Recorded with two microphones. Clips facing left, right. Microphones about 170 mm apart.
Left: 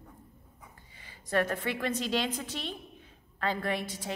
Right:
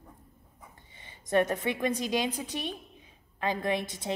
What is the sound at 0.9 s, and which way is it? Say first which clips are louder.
A woman's voice: right 4 dB; 25° right (ahead or behind).